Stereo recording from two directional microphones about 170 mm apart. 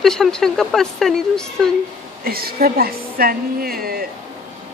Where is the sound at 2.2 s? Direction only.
60° right (ahead or behind).